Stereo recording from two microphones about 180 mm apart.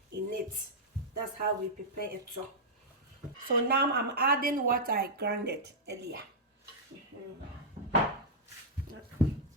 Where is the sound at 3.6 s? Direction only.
60° right (ahead or behind).